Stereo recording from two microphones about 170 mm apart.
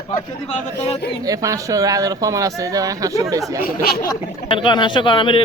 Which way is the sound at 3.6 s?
60° left (ahead or behind).